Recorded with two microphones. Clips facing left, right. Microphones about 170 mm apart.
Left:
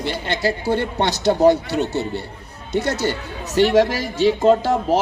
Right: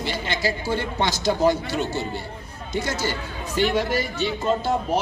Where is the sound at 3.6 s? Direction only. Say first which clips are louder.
Left 6 dB; 90° left.